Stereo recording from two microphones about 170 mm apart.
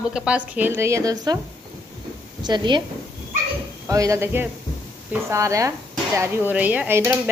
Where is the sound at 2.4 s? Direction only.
25° right (ahead or behind).